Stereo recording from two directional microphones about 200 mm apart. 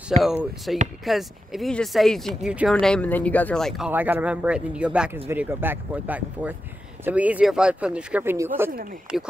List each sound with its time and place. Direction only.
0.1 s speech: 35° right (ahead or behind)
0.7 s speech: centre (ahead or behind)